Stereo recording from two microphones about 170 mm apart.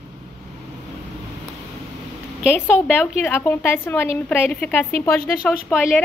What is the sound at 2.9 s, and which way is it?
A woman's voice, 10° left (ahead or behind).